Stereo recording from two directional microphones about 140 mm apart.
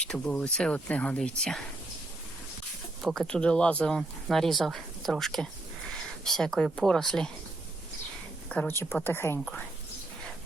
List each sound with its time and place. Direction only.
0.0 s speech: 10° left (ahead or behind)
3.0 s speech: centre (ahead or behind)
8.4 s speech: 10° left (ahead or behind)